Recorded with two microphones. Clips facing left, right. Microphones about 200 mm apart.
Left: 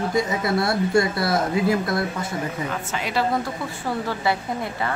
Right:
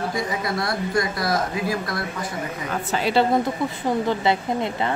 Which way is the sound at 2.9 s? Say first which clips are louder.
Right 5 dB; 30° right (ahead or behind).